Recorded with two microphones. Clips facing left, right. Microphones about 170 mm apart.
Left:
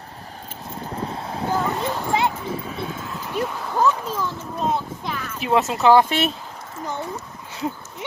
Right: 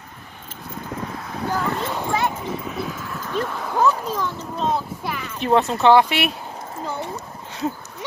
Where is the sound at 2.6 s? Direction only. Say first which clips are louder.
Right 1 dB; 30° left (ahead or behind).